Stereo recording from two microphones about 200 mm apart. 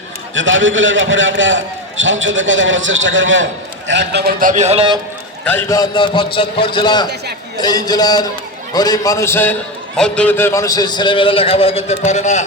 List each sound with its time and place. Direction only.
0.3 s a man's voice: 70° right (ahead or behind)
3.8 s a man's voice: 60° right (ahead or behind); by 4.9 s 30° right (ahead or behind)
5.5 s a man's voice: 15° left (ahead or behind); by 12.5 s 35° left (ahead or behind)